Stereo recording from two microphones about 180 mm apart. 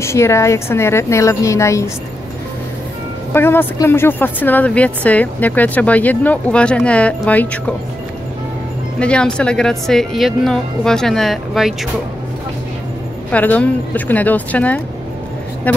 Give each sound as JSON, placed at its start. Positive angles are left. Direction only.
{"t": 0.0, "sound": "speech", "side_deg": 15}
{"t": 3.3, "sound": "speech", "side_deg": 10}
{"t": 9.0, "sound": "speech", "side_deg": 5}
{"t": 13.3, "sound": "speech", "side_deg": 10}